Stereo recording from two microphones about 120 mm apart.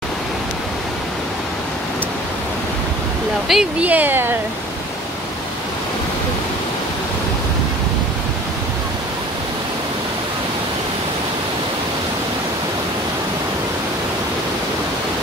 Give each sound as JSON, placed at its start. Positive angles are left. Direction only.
{"t": 3.4, "sound": "speech", "side_deg": -5}
{"t": 3.9, "sound": "speech", "side_deg": -15}